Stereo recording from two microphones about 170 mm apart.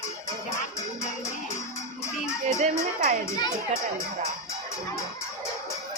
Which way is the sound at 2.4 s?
45° right (ahead or behind).